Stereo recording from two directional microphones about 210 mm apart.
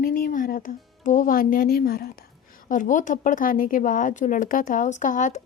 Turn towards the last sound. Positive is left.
turn(degrees=35)  # may be behind; listen again after turning